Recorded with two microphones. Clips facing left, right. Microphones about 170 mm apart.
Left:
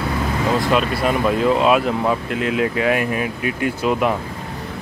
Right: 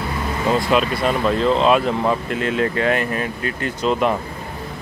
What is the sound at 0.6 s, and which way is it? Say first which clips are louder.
Speech: right 1 dB; centre (ahead or behind).